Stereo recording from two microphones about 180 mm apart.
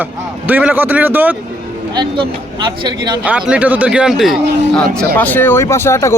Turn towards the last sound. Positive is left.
turn(degrees=15)  # may be behind; listen again after turning